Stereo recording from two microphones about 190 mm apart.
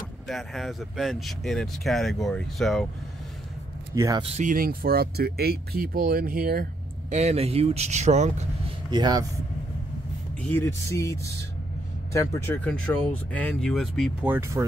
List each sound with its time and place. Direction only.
0.3 s speech: centre (ahead or behind)
3.9 s speech: 20° right (ahead or behind)
4.3 s speech: 40° right (ahead or behind)
8.9 s speech: 20° right (ahead or behind)
10.4 s speech: 10° left (ahead or behind)
14.2 s speech: 10° right (ahead or behind)